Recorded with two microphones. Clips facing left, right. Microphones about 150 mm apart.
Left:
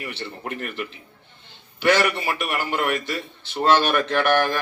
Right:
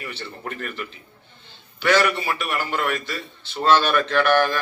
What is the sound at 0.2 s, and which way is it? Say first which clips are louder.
A man's voice: left 1 dB; 15° left (ahead or behind).